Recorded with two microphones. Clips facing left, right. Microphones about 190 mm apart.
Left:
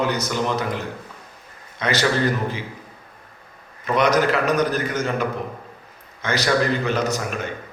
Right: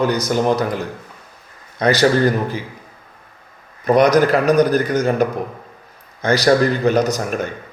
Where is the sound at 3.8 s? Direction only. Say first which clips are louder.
Right 6 dB; 40° right (ahead or behind).